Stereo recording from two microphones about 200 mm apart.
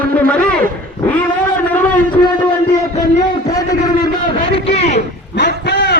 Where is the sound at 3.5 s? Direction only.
20° left (ahead or behind).